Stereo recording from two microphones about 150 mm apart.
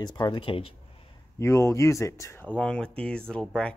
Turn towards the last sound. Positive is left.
turn(degrees=5)  # may be behind; listen again after turning